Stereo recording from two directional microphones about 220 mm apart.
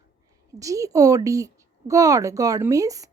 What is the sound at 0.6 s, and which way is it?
A woman's voice, 15° right (ahead or behind).